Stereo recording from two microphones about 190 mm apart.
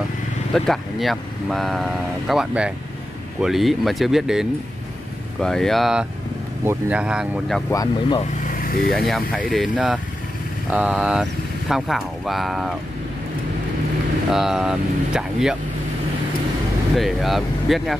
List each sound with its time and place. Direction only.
0.7 s speech: centre (ahead or behind)
7.7 s speech: 20° left (ahead or behind)
8.5 s vehicle: 50° left (ahead or behind)
8.9 s speech: centre (ahead or behind)
14.3 s speech: centre (ahead or behind)
16.9 s speech: centre (ahead or behind)